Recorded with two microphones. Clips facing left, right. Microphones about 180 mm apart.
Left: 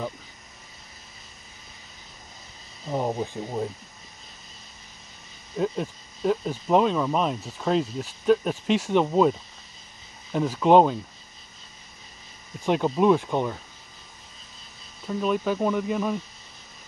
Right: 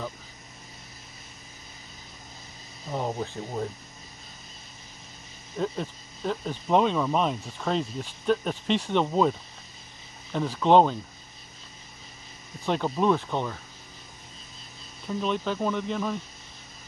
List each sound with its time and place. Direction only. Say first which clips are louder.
2.9 s speech: left 3 dB; 15° left (ahead or behind)
5.6 s speech: left 3 dB; 5° left (ahead or behind)
10.3 s speech: left 2 dB; 10° left (ahead or behind)
12.6 s speech: left 4 dB; 10° left (ahead or behind)
15.0 s speech: left 3 dB; 5° left (ahead or behind)